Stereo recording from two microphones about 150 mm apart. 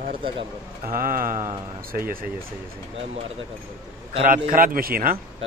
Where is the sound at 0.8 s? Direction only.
70° right (ahead or behind).